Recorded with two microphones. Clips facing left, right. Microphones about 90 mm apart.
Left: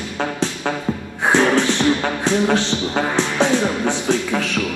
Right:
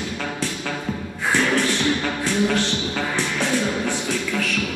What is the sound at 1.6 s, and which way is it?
Music, 20° left (ahead or behind).